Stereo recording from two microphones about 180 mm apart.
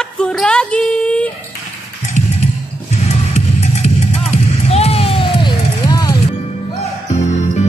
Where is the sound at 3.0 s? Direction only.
35° left (ahead or behind).